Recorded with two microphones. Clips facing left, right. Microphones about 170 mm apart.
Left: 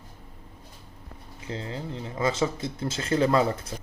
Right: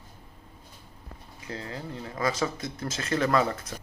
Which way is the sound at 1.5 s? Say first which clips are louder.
Left 3 dB; 25° left (ahead or behind).